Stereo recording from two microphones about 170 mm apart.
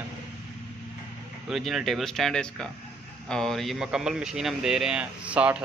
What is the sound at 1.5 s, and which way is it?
Speech, centre (ahead or behind).